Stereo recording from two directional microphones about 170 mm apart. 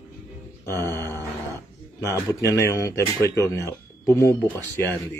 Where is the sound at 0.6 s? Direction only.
10° left (ahead or behind).